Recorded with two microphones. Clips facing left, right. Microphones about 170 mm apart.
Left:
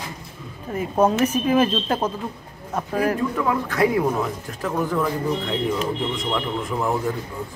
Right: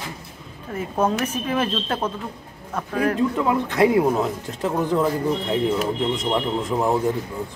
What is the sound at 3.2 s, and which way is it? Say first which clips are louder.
Speech: right 2 dB; 20° right (ahead or behind).